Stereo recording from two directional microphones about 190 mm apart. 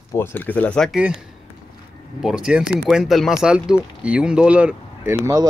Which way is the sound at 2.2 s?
5° right (ahead or behind).